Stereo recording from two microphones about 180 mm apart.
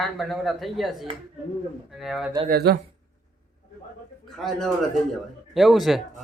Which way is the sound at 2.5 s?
60° right (ahead or behind).